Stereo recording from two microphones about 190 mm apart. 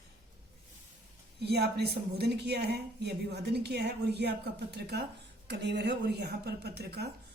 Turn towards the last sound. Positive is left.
turn(degrees=-60)  # may be behind; listen again after turning